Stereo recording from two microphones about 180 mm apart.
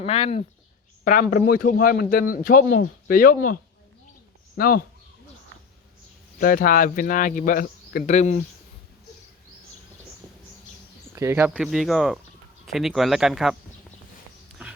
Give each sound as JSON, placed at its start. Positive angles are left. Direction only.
{"t": 0.0, "sound": "speech", "side_deg": 35}
{"t": 1.0, "sound": "speech", "side_deg": 50}
{"t": 6.4, "sound": "speech", "side_deg": 50}
{"t": 11.1, "sound": "speech", "side_deg": -15}
{"t": 11.5, "sound": "speech", "side_deg": 0}